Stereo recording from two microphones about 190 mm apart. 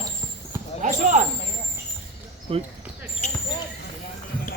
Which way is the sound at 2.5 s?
30° right (ahead or behind).